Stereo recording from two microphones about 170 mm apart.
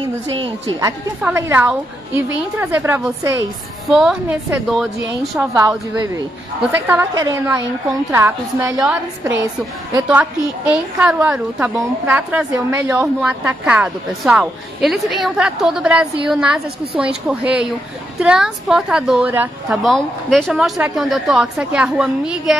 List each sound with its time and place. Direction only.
0.4 s a woman's voice: 25° right (ahead or behind)
1.2 s a woman's voice: 15° right (ahead or behind)
3.9 s a woman's voice: 5° right (ahead or behind)
5.4 s a woman's voice: 15° right (ahead or behind)
6.9 s a woman's voice: 20° right (ahead or behind)
11.0 s a woman's voice: 10° right (ahead or behind)
19.8 s a woman's voice: centre (ahead or behind)